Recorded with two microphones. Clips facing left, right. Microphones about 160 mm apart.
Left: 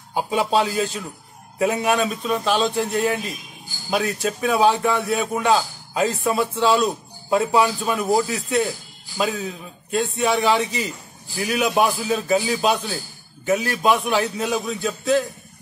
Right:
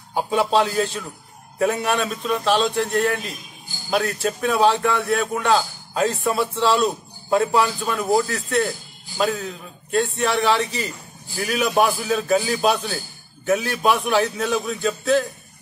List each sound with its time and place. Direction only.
0.1 s a man's voice: 5° left (ahead or behind)
9.2 s a man's voice: 5° left (ahead or behind)